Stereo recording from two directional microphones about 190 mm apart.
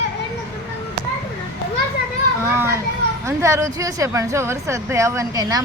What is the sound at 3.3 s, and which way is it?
Speech, 15° right (ahead or behind).